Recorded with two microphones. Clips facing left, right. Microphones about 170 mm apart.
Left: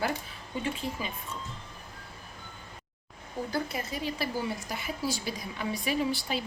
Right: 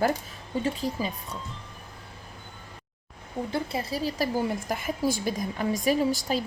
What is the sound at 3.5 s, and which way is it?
A woman's voice, 30° right (ahead or behind).